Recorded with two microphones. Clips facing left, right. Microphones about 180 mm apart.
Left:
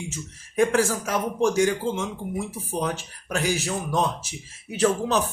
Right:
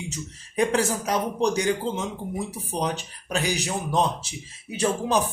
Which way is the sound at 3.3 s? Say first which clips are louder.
Left 1 dB; 20° right (ahead or behind).